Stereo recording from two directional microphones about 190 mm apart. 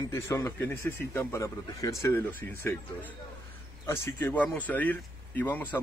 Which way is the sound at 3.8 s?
15° left (ahead or behind).